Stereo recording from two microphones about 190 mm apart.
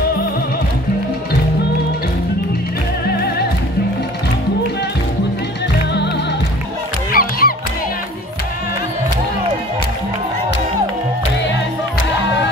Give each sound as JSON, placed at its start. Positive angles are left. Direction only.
{"t": 3.1, "sound": "music", "side_deg": 55}
{"t": 7.1, "sound": "music", "side_deg": 50}